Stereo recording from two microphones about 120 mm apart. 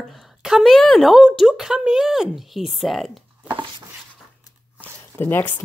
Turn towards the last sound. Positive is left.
turn(degrees=15)  # may be behind; listen again after turning